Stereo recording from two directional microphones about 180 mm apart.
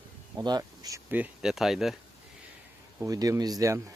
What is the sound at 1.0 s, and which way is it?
Speech, 10° right (ahead or behind).